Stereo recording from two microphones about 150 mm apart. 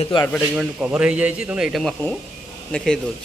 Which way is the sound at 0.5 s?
5° right (ahead or behind).